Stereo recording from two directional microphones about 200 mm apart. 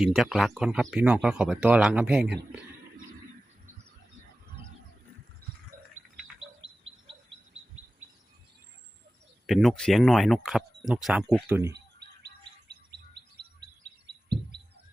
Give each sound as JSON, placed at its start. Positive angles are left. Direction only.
{"t": 0.0, "sound": "speech", "side_deg": 0}
{"t": 5.7, "sound": "a sound", "side_deg": -45}
{"t": 9.5, "sound": "speech", "side_deg": 0}
{"t": 11.7, "sound": "chirp", "side_deg": -55}